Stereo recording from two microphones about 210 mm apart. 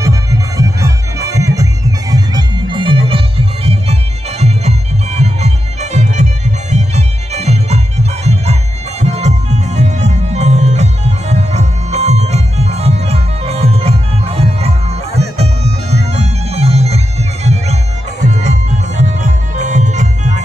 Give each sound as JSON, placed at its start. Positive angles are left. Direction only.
{"t": 0.0, "sound": "music", "side_deg": -15}
{"t": 15.1, "sound": "bagpipes", "side_deg": -30}
{"t": 18.4, "sound": "music", "side_deg": -35}